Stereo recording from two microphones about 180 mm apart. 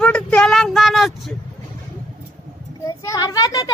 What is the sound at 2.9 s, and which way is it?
Speech, 20° left (ahead or behind).